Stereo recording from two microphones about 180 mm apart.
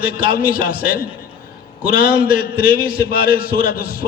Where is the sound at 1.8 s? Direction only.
30° right (ahead or behind).